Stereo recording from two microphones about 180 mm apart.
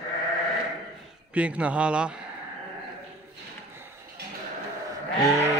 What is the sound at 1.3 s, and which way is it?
Speech, 5° right (ahead or behind).